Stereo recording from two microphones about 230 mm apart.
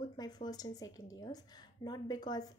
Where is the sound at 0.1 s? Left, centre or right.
Centre.